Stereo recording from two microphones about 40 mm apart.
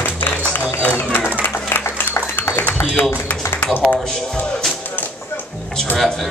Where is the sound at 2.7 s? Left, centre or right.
Left.